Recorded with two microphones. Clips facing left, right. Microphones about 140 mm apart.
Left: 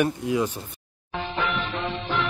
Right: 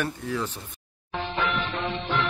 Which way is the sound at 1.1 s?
Centre (ahead or behind).